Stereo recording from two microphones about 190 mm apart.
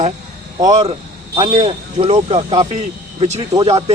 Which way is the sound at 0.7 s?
35° right (ahead or behind).